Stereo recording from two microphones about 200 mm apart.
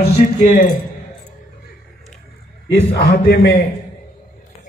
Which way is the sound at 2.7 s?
45° left (ahead or behind).